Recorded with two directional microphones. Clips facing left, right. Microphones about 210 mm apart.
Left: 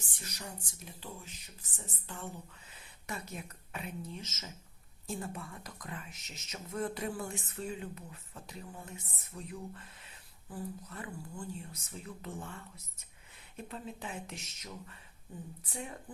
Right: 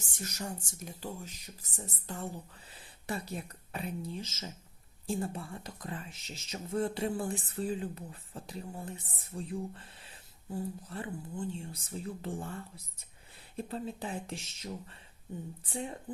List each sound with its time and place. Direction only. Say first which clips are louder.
0.1 s a woman's voice: right 7 dB; 45° right (ahead or behind); by 16.1 s 30° right (ahead or behind)